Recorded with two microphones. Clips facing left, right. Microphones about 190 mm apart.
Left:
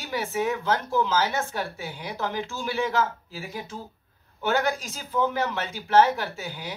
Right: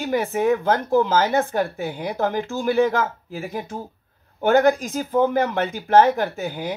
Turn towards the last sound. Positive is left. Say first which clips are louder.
# right 8 dB
turn(degrees=-55)  # may be behind; listen again after turning